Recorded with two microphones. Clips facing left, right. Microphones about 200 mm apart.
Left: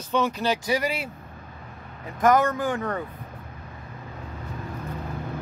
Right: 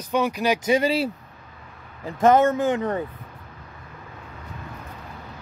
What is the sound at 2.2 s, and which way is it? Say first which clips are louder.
Speech: right 3 dB; 25° right (ahead or behind).